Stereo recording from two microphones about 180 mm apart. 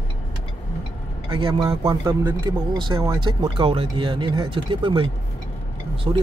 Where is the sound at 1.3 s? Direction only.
30° right (ahead or behind).